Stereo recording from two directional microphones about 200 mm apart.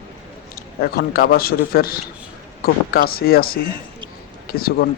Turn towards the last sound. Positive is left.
turn(degrees=50)  # may be behind; listen again after turning